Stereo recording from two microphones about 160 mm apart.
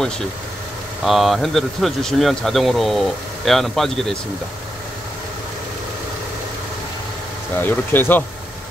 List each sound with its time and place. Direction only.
1.0 s speech: centre (ahead or behind)
7.6 s speech: 10° left (ahead or behind)